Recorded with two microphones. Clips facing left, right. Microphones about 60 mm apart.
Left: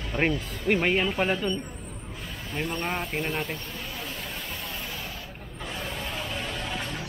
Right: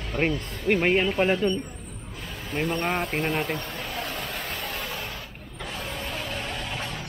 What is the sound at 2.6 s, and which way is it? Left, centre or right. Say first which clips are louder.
Speech: right 4 dB; centre.